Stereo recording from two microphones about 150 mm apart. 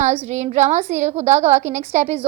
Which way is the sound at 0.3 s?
50° right (ahead or behind).